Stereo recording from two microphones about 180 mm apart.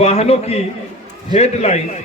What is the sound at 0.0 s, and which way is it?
A man's voice, 35° left (ahead or behind).